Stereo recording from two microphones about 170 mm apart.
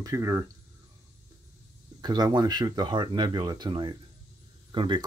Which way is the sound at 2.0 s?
25° right (ahead or behind).